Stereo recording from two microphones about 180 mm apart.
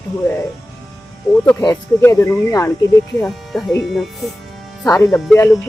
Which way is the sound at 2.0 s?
15° left (ahead or behind).